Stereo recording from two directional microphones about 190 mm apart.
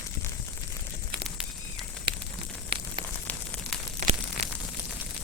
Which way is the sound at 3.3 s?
10° left (ahead or behind).